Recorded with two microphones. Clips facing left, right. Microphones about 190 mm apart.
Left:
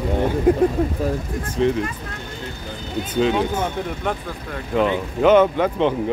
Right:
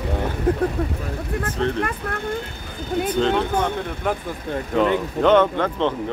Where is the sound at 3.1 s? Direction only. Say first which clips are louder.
Left 2 dB; 5° left (ahead or behind).